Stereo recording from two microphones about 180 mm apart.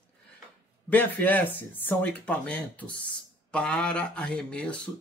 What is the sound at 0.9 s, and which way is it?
Speech, 10° left (ahead or behind).